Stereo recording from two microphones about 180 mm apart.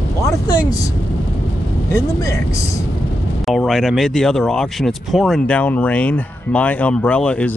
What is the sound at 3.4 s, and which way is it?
Speech, centre (ahead or behind).